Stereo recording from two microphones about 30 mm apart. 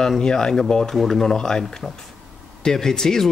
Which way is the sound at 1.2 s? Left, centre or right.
Left.